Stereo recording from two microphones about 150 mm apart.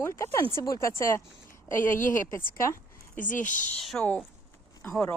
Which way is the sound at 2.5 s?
20° left (ahead or behind).